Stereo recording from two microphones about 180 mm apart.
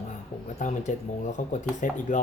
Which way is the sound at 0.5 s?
40° left (ahead or behind).